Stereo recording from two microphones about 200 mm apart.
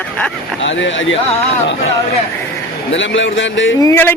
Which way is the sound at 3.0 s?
70° left (ahead or behind).